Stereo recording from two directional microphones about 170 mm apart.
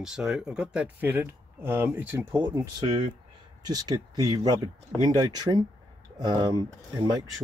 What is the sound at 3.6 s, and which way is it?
Speech, 20° right (ahead or behind).